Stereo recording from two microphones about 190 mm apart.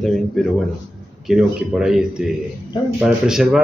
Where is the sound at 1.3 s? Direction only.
5° right (ahead or behind).